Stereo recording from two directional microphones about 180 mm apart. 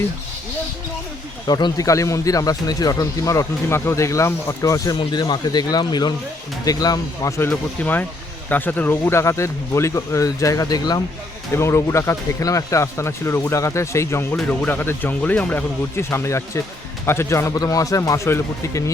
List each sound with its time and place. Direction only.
1.5 s speech: 20° left (ahead or behind)